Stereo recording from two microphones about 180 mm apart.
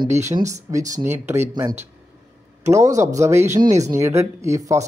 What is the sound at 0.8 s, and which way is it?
Speech, 45° right (ahead or behind).